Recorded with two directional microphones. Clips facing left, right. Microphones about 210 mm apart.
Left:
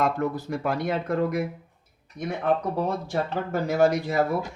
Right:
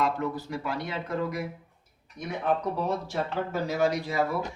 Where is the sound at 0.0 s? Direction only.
50° left (ahead or behind).